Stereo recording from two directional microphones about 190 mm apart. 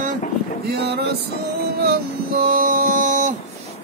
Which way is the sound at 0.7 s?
55° right (ahead or behind).